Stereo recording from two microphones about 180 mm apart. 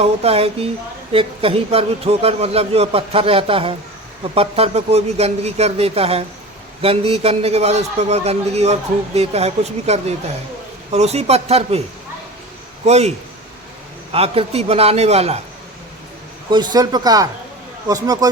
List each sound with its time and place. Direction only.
0.0 s a man's voice: 35° right (ahead or behind)
12.8 s a man's voice: 35° right (ahead or behind)
16.5 s speech: 25° right (ahead or behind)